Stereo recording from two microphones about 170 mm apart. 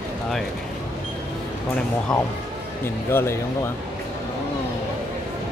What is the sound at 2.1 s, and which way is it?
Speech, 5° left (ahead or behind).